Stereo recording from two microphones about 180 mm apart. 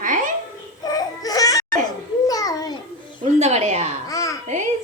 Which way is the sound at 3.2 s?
35° right (ahead or behind).